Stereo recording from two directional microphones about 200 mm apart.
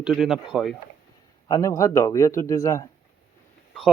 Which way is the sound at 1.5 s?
15° left (ahead or behind).